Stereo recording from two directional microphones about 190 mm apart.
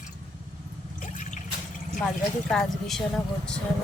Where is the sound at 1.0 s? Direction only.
45° left (ahead or behind).